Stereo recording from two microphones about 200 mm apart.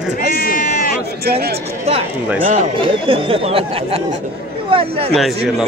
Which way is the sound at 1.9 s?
30° right (ahead or behind).